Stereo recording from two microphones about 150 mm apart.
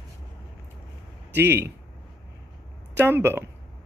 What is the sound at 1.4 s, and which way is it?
Speech, 15° right (ahead or behind).